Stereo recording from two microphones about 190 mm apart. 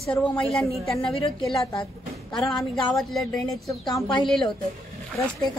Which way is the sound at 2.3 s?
Centre (ahead or behind).